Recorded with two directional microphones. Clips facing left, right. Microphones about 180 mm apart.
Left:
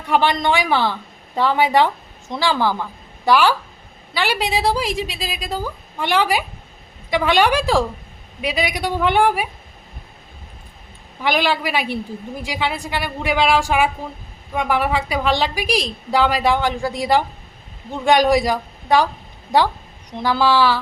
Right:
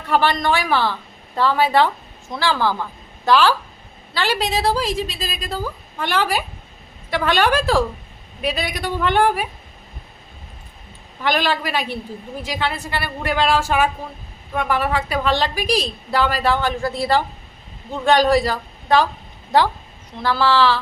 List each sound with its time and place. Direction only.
0.1 s a woman's voice: 15° left (ahead or behind)
11.2 s a woman's voice: 10° left (ahead or behind)